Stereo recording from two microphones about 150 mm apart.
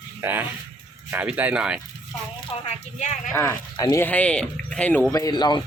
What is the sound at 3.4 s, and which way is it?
Speech, 15° left (ahead or behind).